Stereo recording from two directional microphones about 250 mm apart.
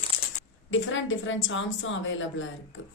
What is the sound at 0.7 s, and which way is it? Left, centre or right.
A woman's voice, left.